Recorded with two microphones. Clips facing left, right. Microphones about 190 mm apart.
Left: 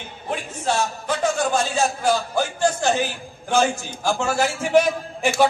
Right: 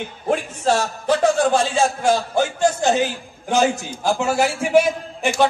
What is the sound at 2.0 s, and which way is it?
A man's voice, 25° right (ahead or behind).